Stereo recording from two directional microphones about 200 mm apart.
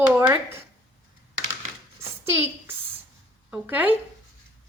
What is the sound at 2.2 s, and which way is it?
A woman's voice, 10° right (ahead or behind).